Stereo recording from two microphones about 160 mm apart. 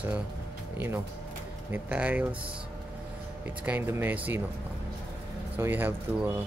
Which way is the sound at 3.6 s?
15° right (ahead or behind).